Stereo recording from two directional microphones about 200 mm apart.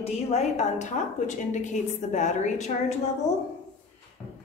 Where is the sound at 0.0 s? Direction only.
35° left (ahead or behind).